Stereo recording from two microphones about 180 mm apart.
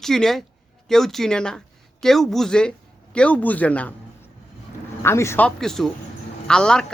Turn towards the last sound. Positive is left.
turn(degrees=5)  # may be behind; listen again after turning